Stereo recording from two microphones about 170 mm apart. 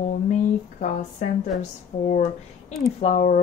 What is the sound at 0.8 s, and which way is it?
A woman's voice, 45° left (ahead or behind).